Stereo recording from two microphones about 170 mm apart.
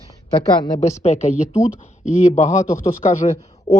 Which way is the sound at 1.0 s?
40° left (ahead or behind).